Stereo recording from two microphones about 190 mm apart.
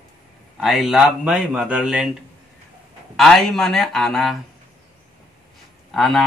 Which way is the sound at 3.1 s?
Centre (ahead or behind).